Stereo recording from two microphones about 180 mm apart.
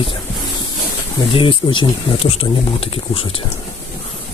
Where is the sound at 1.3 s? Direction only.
30° left (ahead or behind).